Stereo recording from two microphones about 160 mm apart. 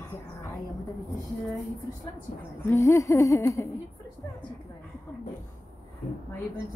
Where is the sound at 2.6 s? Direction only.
15° left (ahead or behind).